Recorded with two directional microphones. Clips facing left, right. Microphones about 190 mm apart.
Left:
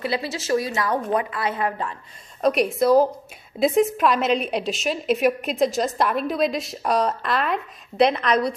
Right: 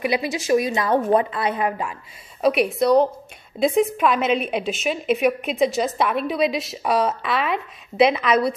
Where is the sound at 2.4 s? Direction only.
Centre (ahead or behind).